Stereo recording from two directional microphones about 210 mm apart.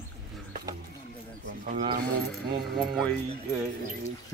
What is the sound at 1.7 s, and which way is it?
Speech, 40° right (ahead or behind).